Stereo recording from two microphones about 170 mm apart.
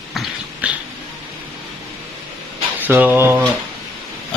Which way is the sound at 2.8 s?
10° right (ahead or behind).